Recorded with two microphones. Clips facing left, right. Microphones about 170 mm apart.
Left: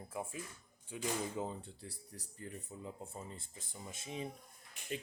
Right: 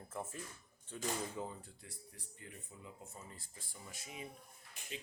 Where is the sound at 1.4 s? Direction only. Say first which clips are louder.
Left 4 dB; 25° left (ahead or behind).